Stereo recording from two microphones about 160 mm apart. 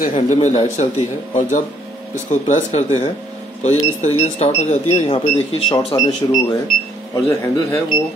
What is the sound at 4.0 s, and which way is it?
A man's voice, 45° left (ahead or behind).